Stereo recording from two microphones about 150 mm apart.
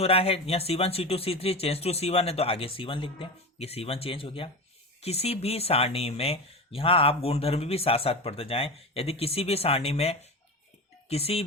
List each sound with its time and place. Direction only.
0.0 s speech: 40° left (ahead or behind)